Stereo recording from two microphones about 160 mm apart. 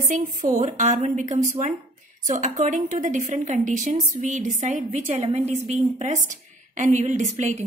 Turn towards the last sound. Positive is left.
turn(degrees=-45)  # may be behind; listen again after turning